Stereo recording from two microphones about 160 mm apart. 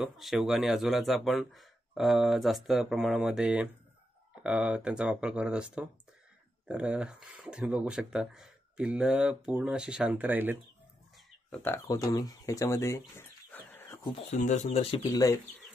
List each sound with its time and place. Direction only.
0.0 s speech: centre (ahead or behind)
11.6 s speech: 15° left (ahead or behind)
13.5 s dog: 15° left (ahead or behind)
14.1 s speech: 45° left (ahead or behind)